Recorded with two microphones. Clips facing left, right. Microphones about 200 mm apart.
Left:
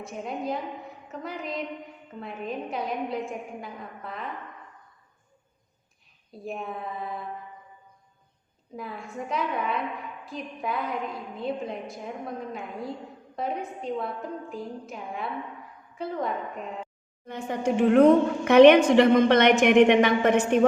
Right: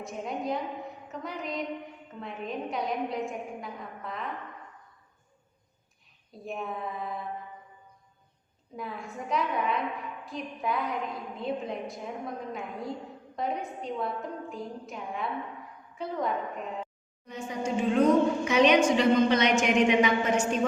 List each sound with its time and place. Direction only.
0.0 s a woman's voice: centre (ahead or behind)
6.3 s a woman's voice: centre (ahead or behind)
8.7 s a woman's voice: centre (ahead or behind)
13.3 s a woman's voice: centre (ahead or behind)
17.2 s a woman's voice: 60° left (ahead or behind)